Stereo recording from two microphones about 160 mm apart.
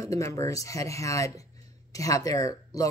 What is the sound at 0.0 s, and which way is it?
Speech, 20° left (ahead or behind).